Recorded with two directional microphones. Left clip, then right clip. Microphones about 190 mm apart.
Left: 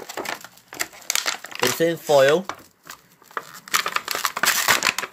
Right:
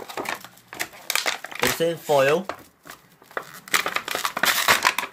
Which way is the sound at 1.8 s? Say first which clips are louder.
Left 4 dB; 30° left (ahead or behind).